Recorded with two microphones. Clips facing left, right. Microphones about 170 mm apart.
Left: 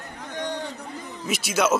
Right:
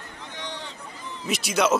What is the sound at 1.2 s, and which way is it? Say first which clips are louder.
Speech: even; centre (ahead or behind).